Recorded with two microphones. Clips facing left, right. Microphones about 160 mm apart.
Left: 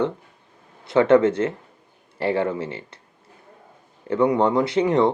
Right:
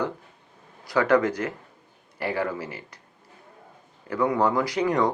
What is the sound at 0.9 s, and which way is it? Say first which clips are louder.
Speech: left 5 dB; 25° left (ahead or behind).